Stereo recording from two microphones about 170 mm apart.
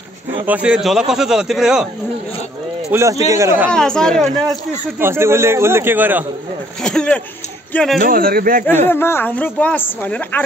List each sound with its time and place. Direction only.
0.5 s speech: 5° right (ahead or behind)
2.9 s speech: 15° right (ahead or behind)
3.7 s speech: 5° left (ahead or behind)
4.9 s speech: 15° right (ahead or behind)
6.8 s speech: 5° left (ahead or behind)
8.0 s speech: 60° right (ahead or behind)
8.8 s a woman's voice: 15° left (ahead or behind)